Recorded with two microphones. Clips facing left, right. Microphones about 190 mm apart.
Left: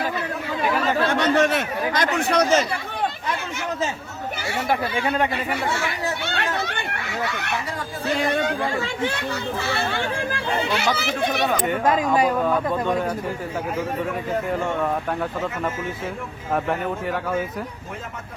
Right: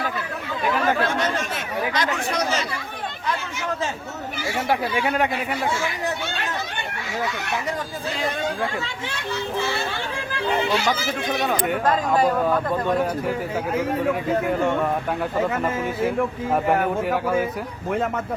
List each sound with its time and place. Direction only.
1.2 s a man's voice: 65° left (ahead or behind)
1.9 s speech: 55° left (ahead or behind)
4.7 s speech: 10° right (ahead or behind)
5.3 s a man's voice: 65° left (ahead or behind)
10.9 s a man's voice: 70° left (ahead or behind)
11.4 s speech: centre (ahead or behind)